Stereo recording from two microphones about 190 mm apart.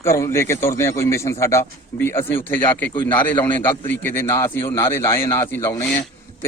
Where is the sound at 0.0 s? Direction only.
15° left (ahead or behind).